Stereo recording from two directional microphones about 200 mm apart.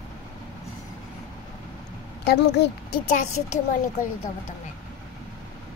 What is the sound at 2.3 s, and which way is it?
Speech, 55° left (ahead or behind).